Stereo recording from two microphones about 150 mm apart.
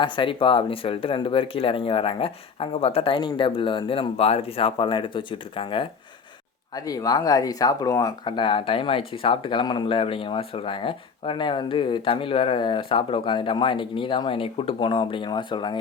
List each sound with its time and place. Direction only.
0.0 s speech: 35° left (ahead or behind)
6.7 s speech: 25° left (ahead or behind)